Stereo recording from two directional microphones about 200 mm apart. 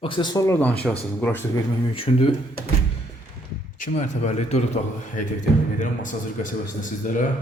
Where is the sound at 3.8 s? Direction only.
35° left (ahead or behind).